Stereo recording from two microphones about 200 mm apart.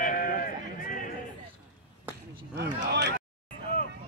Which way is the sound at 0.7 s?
45° left (ahead or behind).